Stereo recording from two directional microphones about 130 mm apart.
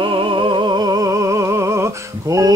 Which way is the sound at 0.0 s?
40° right (ahead or behind).